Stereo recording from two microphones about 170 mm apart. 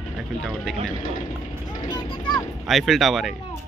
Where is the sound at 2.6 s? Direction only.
Centre (ahead or behind).